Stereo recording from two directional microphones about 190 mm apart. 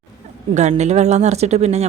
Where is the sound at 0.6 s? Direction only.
35° right (ahead or behind).